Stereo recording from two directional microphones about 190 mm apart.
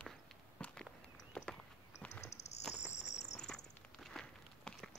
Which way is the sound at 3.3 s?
5° left (ahead or behind).